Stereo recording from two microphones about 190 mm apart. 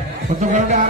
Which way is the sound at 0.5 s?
40° right (ahead or behind).